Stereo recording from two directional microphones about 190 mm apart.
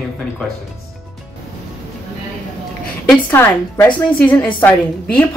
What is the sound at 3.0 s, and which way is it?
A woman's voice, 10° left (ahead or behind).